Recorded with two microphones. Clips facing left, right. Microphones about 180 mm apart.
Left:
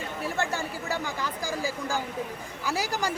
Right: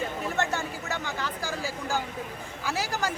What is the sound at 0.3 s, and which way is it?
Speech, 10° left (ahead or behind).